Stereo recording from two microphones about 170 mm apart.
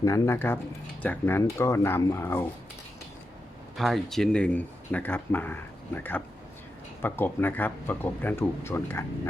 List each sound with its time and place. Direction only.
0.0 s speech: 15° left (ahead or behind)
3.8 s speech: centre (ahead or behind)